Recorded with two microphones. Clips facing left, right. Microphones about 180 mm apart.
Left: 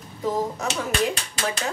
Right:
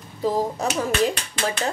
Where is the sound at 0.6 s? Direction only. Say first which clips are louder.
Right 3 dB; 35° right (ahead or behind).